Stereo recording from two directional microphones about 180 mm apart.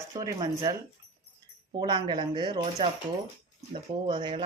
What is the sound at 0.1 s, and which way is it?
Speech, 25° right (ahead or behind).